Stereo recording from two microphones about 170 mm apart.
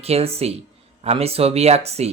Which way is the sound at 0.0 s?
35° right (ahead or behind).